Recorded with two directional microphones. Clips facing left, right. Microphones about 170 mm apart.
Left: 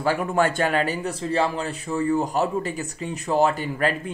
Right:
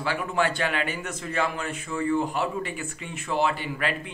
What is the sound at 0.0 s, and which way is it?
A man's voice, 45° left (ahead or behind).